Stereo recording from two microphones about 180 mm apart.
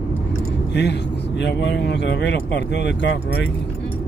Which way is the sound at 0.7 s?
70° left (ahead or behind).